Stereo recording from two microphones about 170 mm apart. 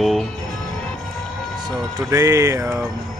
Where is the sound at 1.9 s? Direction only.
20° right (ahead or behind).